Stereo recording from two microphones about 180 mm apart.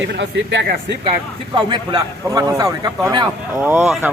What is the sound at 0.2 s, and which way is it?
Speech, 80° right.